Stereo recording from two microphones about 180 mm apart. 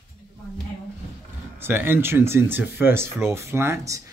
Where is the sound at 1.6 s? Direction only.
10° right (ahead or behind).